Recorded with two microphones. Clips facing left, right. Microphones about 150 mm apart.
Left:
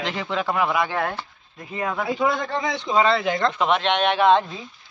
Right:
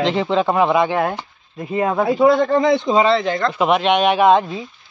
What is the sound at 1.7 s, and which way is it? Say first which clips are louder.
Speech: right 8 dB; 35° right (ahead or behind).